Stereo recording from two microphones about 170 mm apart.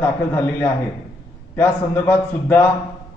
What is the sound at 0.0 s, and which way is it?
A man's voice, 15° left (ahead or behind).